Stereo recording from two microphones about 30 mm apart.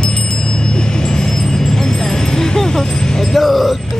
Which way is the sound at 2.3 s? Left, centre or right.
Centre.